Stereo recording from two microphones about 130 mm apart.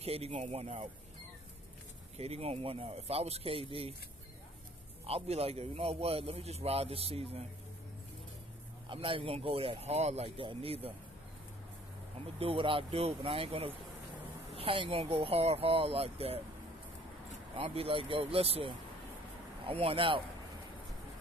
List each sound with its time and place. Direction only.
0.0 s a man's voice: 50° right (ahead or behind)
2.1 s a man's voice: 50° right (ahead or behind)
5.0 s a man's voice: 50° right (ahead or behind)
8.8 s a man's voice: 45° right (ahead or behind)
12.4 s a man's voice: 45° right (ahead or behind)
17.6 s a man's voice: 50° right (ahead or behind)